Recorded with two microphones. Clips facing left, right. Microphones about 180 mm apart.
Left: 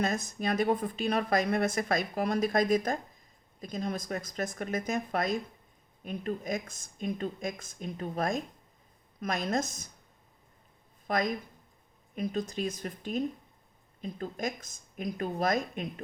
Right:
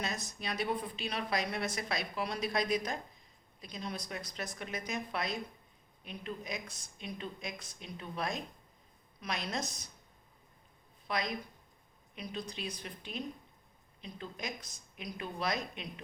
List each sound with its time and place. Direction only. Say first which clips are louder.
0.0 s speech: left 9 dB; 50° left (ahead or behind)
11.0 s a woman's voice: left 6 dB; 45° left (ahead or behind)